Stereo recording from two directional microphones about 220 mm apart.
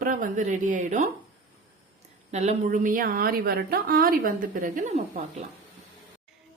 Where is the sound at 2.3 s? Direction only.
30° right (ahead or behind).